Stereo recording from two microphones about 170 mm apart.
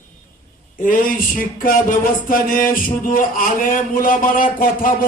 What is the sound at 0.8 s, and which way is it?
A man's voice, 55° left (ahead or behind).